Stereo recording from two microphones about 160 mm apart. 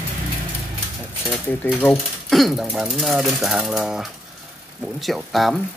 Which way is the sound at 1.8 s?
Centre (ahead or behind).